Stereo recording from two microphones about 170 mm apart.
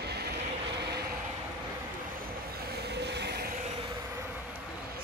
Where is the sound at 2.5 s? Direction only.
70° right (ahead or behind).